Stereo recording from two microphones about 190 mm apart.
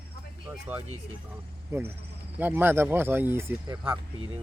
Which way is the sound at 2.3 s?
10° right (ahead or behind).